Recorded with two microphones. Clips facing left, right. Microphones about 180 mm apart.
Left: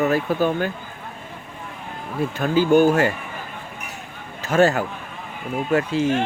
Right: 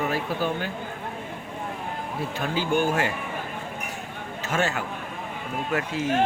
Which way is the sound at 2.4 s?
45° left (ahead or behind).